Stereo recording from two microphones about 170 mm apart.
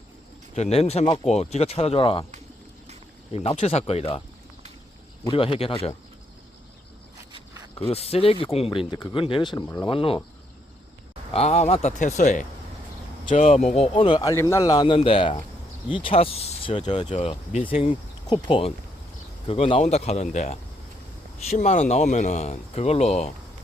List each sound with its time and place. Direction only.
0.5 s speech: 40° left (ahead or behind)
3.3 s speech: 40° left (ahead or behind)
5.2 s speech: 30° left (ahead or behind)
7.8 s speech: 35° left (ahead or behind)
11.3 s speech: 40° left (ahead or behind)
17.1 s speech: 40° left (ahead or behind)